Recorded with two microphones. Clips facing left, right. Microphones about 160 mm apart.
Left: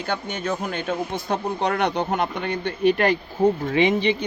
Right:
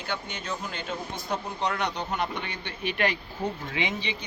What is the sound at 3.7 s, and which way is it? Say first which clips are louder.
Speech: left 12 dB; 55° left (ahead or behind).